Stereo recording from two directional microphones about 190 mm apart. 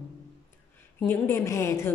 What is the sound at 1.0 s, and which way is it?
Speech, 10° left (ahead or behind).